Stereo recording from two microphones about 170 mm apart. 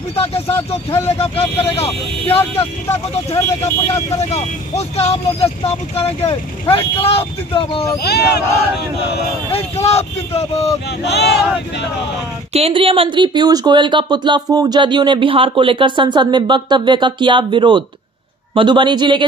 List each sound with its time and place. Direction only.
0.1 s speech: 35° left (ahead or behind)
3.3 s speech: 15° left (ahead or behind)
3.9 s speech: 40° left (ahead or behind)
8.0 s speech: 70° left (ahead or behind)
9.5 s speech: 35° left (ahead or behind)
10.9 s speech: 80° left
12.5 s speech: 35° right (ahead or behind)